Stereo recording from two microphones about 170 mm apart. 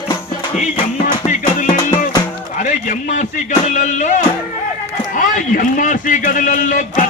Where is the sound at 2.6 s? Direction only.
50° left (ahead or behind).